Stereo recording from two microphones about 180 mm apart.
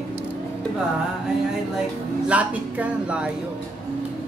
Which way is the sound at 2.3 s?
10° right (ahead or behind).